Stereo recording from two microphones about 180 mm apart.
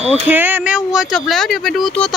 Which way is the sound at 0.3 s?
10° right (ahead or behind).